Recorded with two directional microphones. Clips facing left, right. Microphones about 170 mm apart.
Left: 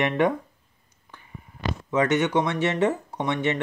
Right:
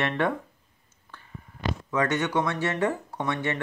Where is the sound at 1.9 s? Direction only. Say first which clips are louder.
Left 4 dB; 20° left (ahead or behind).